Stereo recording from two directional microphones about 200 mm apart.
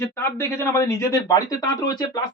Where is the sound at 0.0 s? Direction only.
10° left (ahead or behind).